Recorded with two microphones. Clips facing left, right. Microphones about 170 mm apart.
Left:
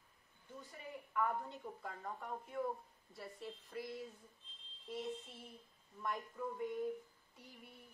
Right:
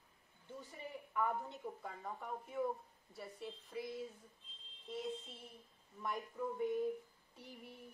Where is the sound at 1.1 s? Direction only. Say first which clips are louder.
Even; 10° right (ahead or behind).